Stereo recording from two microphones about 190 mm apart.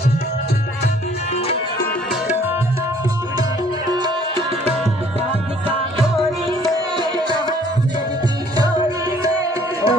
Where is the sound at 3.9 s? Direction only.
25° right (ahead or behind).